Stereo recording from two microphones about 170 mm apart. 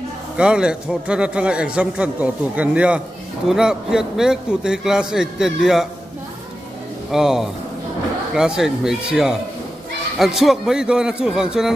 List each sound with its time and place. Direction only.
0.4 s a man's voice: 5° right (ahead or behind)
7.1 s a man's voice: 5° right (ahead or behind)